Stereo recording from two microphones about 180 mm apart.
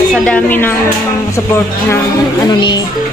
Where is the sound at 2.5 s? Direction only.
25° left (ahead or behind).